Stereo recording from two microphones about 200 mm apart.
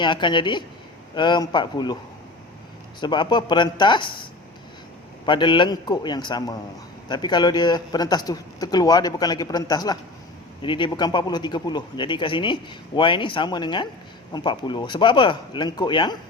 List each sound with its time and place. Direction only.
0.0 s a man's voice: 25° left (ahead or behind)
3.0 s a man's voice: 20° left (ahead or behind)
5.2 s a man's voice: 25° left (ahead or behind)